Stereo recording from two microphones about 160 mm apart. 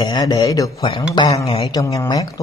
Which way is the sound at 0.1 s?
25° left (ahead or behind).